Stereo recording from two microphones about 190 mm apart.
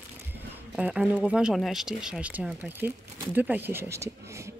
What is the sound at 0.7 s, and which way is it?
Speech, 5° right (ahead or behind).